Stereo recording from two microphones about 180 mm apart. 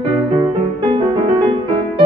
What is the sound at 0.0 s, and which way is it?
Music, 25° right (ahead or behind).